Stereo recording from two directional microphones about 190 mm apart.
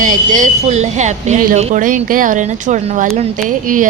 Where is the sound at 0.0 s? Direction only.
45° right (ahead or behind).